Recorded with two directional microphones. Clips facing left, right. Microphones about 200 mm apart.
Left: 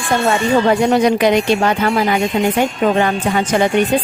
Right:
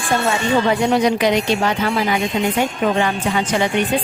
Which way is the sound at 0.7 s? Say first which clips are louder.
Left 3 dB; 50° left (ahead or behind).